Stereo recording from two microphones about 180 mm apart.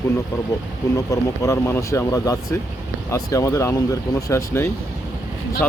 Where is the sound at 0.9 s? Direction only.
15° left (ahead or behind).